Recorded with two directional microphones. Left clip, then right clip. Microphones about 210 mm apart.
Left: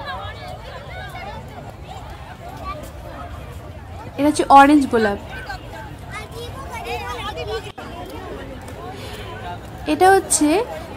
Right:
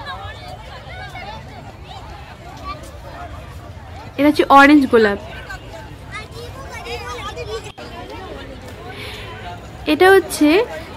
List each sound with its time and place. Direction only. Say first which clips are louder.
0.0 s vehicle: left 1 dB; 30° left (ahead or behind)
4.2 s a woman's voice: right 1 dB; centre (ahead or behind)
6.7 s a sound: left 1 dB; 35° left (ahead or behind)
9.8 s a woman's voice: right 2 dB; 5° right (ahead or behind)